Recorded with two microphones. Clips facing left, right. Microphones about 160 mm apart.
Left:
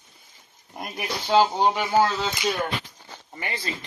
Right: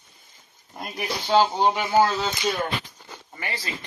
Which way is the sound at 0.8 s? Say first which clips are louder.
Right 1 dB; centre (ahead or behind).